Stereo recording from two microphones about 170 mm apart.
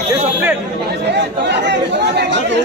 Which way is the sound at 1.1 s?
90° right.